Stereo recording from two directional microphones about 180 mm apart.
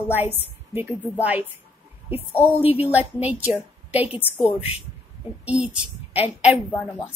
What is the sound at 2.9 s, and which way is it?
A woman's voice, 10° right (ahead or behind).